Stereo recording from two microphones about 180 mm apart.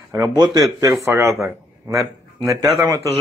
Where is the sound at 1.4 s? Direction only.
15° right (ahead or behind).